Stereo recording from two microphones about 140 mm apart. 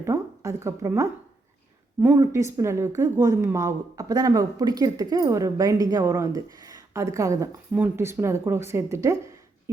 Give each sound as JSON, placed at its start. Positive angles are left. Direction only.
{"t": 0.0, "sound": "a woman's voice", "side_deg": -20}
{"t": 7.7, "sound": "speech", "side_deg": -10}